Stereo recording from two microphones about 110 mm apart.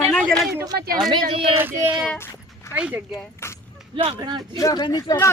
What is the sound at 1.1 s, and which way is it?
Speech, 55° right (ahead or behind).